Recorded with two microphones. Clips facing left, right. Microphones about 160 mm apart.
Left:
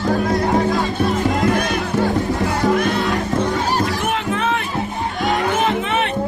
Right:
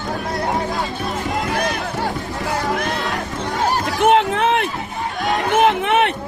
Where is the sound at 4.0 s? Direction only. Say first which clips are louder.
Right 6 dB; 60° right (ahead or behind).